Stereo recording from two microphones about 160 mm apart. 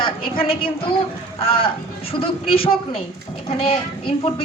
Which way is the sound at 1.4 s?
35° left (ahead or behind).